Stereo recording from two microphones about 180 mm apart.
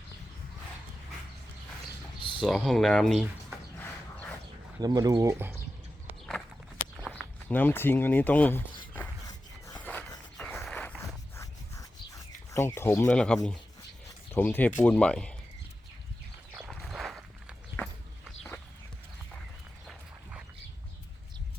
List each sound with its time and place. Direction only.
2.4 s speech: centre (ahead or behind)
4.8 s speech: 20° right (ahead or behind)
6.9 s speech: centre (ahead or behind)
8.9 s a sound: 15° left (ahead or behind)
9.8 s walk: 5° left (ahead or behind)
12.5 s speech: 15° left (ahead or behind)
16.6 s a sound: centre (ahead or behind)